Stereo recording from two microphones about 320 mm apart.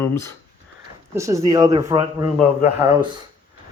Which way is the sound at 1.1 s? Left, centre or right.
Centre.